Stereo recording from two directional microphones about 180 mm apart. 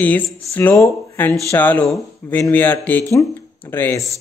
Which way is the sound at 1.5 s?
10° left (ahead or behind).